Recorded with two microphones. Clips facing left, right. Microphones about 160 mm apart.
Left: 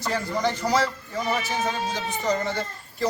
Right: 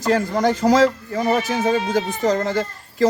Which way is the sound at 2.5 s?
90° right.